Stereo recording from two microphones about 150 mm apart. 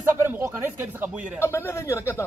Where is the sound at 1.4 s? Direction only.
15° left (ahead or behind).